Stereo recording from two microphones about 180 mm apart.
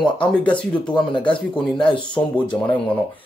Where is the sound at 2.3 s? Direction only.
25° left (ahead or behind).